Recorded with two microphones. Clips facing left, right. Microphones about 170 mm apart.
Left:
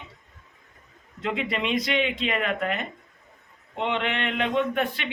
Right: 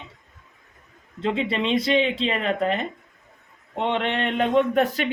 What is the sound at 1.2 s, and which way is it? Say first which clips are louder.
Speech: right 4 dB; 30° right (ahead or behind).